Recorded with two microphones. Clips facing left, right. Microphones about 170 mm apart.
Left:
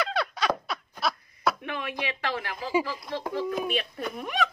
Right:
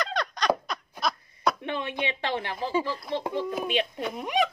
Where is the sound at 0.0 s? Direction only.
5° left (ahead or behind).